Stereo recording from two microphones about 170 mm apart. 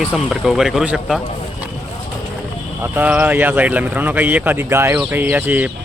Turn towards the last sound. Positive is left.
turn(degrees=-10)  # may be behind; listen again after turning